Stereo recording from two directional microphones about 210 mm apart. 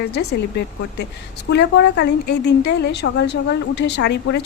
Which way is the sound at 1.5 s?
55° left (ahead or behind).